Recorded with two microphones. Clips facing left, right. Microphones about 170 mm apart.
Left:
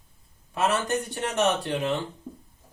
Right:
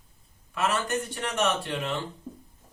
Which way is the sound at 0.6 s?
30° left (ahead or behind).